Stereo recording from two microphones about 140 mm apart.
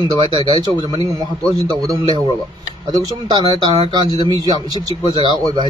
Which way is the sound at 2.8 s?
30° right (ahead or behind).